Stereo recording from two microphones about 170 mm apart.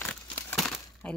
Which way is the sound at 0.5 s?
Centre (ahead or behind).